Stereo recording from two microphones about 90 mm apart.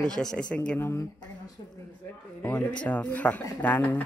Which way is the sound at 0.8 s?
30° left (ahead or behind).